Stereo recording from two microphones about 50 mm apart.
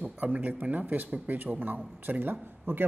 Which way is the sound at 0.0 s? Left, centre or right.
Right.